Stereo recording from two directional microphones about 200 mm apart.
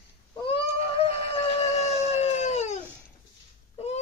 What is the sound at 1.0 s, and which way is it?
Howl, 30° left (ahead or behind).